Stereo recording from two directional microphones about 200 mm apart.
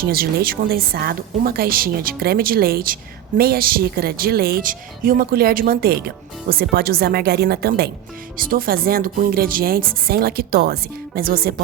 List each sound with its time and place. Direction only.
0.0 s a woman's voice: 50° right (ahead or behind)